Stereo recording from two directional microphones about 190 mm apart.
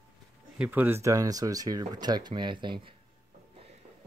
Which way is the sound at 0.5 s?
10° right (ahead or behind).